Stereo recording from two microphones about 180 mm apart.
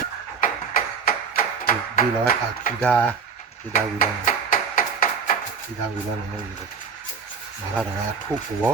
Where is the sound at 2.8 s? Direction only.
5° left (ahead or behind).